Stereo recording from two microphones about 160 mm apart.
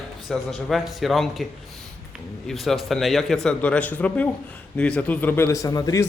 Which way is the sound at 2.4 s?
Centre (ahead or behind).